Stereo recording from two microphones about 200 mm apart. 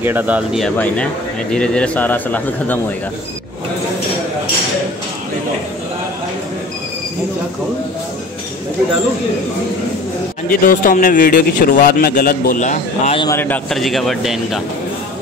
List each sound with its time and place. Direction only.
0.0 s speech: 10° right (ahead or behind)
0.7 s speech: 10° left (ahead or behind)
10.5 s a man's voice: 45° left (ahead or behind)
13.2 s a man's voice: 15° left (ahead or behind)